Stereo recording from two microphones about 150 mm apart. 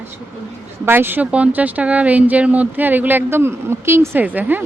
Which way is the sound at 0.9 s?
15° right (ahead or behind).